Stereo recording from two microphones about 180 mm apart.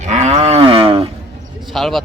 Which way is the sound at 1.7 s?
Centre (ahead or behind).